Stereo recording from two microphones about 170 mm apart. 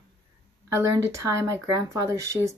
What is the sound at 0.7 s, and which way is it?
Speech, 15° right (ahead or behind).